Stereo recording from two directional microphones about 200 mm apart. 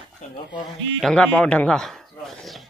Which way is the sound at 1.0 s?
5° left (ahead or behind).